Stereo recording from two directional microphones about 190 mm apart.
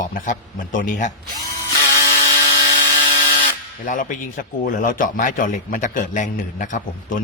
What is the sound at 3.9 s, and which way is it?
Speech, 45° left (ahead or behind).